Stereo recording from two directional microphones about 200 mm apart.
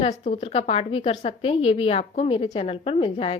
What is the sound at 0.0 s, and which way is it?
A woman's voice, 30° left (ahead or behind).